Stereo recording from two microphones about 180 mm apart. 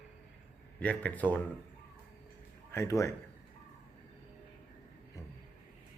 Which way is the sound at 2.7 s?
15° left (ahead or behind).